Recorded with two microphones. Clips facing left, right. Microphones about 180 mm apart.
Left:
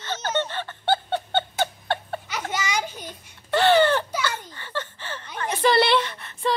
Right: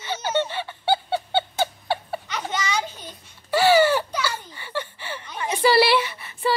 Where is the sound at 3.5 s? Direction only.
5° right (ahead or behind).